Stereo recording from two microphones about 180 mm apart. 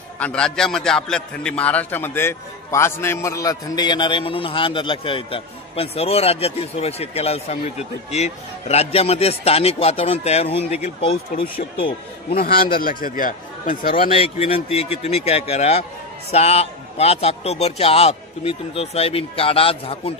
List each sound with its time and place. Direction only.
0.2 s a man's voice: 5° left (ahead or behind); by 11.4 s 30° left (ahead or behind)
12.7 s speech: 50° left (ahead or behind)
14.0 s a man's voice: 30° left (ahead or behind)